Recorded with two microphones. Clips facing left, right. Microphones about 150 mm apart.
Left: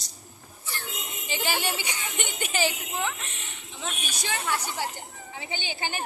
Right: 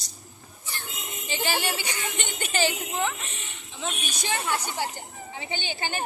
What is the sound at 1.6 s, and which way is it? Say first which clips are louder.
A woman's voice: right 1 dB; 15° left (ahead or behind).